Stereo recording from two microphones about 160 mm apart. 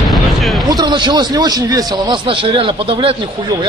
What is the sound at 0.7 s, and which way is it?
A man's voice, 25° right (ahead or behind).